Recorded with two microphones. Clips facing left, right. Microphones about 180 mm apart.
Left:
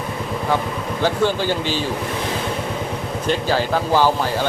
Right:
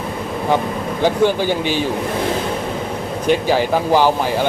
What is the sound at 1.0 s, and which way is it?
Speech, 15° right (ahead or behind).